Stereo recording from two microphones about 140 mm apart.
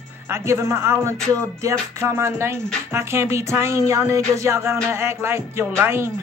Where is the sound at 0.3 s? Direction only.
20° right (ahead or behind).